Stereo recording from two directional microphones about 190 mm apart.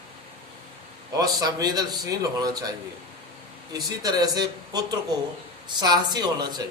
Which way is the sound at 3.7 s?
20° right (ahead or behind).